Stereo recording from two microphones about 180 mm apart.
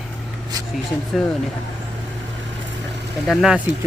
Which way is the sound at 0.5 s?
20° right (ahead or behind).